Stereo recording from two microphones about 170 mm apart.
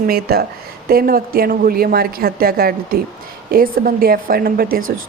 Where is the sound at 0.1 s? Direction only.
65° right (ahead or behind).